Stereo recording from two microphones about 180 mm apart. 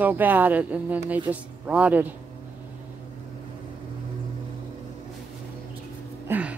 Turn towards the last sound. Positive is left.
turn(degrees=-10)  # may be behind; listen again after turning